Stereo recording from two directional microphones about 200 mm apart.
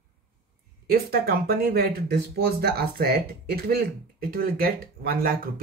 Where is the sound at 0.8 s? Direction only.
50° right (ahead or behind).